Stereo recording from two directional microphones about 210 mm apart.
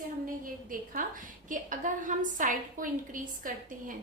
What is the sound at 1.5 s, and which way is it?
A woman's voice, 40° right (ahead or behind).